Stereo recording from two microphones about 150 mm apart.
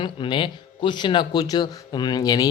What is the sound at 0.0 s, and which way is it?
Speech, 35° left (ahead or behind).